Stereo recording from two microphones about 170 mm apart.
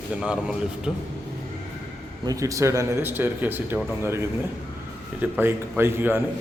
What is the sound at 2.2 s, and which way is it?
Speech, 20° right (ahead or behind).